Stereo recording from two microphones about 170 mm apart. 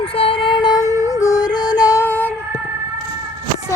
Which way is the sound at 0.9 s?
20° right (ahead or behind).